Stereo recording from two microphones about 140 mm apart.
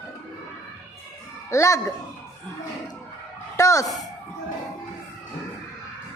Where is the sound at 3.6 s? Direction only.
20° left (ahead or behind).